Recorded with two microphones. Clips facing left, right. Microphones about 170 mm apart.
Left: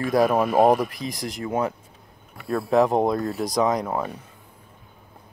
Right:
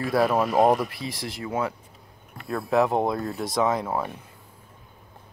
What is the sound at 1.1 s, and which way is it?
Speech, 45° left (ahead or behind).